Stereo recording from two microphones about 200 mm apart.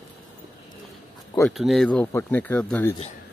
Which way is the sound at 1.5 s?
Centre (ahead or behind).